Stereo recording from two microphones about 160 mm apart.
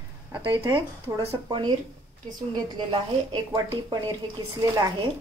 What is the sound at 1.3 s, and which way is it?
A woman's voice, 25° right (ahead or behind).